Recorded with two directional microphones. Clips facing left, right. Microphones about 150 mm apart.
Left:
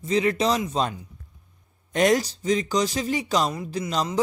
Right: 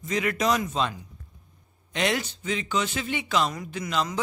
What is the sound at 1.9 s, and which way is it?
Speech, 40° left (ahead or behind).